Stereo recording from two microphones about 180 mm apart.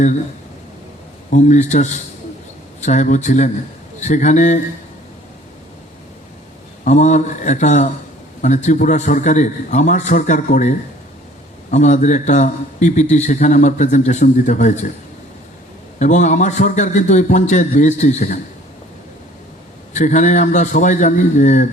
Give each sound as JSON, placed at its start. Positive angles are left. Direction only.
{"t": 1.3, "sound": "a man's voice", "side_deg": 40}
{"t": 6.8, "sound": "a man's voice", "side_deg": 40}
{"t": 16.0, "sound": "a man's voice", "side_deg": 40}
{"t": 19.9, "sound": "a man's voice", "side_deg": 40}